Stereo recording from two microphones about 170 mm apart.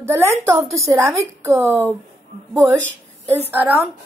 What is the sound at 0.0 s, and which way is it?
A woman's voice, 15° right (ahead or behind).